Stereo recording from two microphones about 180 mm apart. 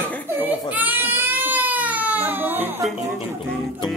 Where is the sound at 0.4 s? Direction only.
10° right (ahead or behind).